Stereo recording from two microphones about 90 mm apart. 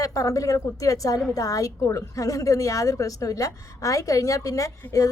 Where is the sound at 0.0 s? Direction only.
40° left (ahead or behind).